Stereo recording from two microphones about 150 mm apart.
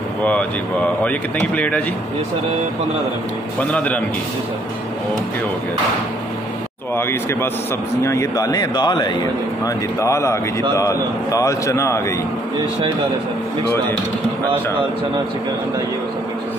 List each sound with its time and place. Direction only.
0.2 s speech: 10° left (ahead or behind)
3.7 s speech: 10° left (ahead or behind)
7.0 s speech: 15° left (ahead or behind)
9.9 s speech: 20° left (ahead or behind)